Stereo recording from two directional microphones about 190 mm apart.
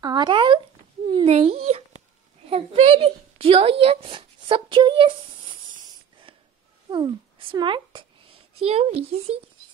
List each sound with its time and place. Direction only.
0.0 s a child's voice: 20° right (ahead or behind)
6.9 s a child's voice: 25° right (ahead or behind)